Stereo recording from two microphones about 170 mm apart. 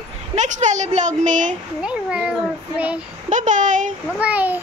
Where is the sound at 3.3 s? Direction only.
50° right (ahead or behind).